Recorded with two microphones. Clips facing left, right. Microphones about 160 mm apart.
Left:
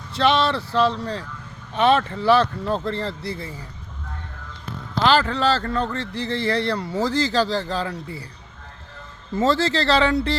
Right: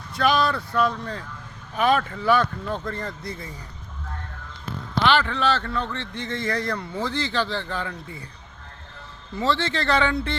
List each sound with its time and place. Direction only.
0.2 s speech: 25° left (ahead or behind)
5.0 s speech: 40° left (ahead or behind)
9.3 s speech: 45° left (ahead or behind)